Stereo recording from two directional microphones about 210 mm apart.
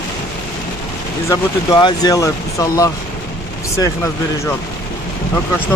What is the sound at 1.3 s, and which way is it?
Speech, 20° left (ahead or behind).